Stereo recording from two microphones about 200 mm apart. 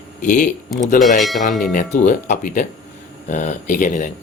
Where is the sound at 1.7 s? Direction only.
40° left (ahead or behind).